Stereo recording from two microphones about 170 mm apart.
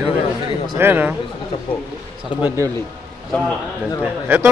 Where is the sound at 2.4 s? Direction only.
15° right (ahead or behind).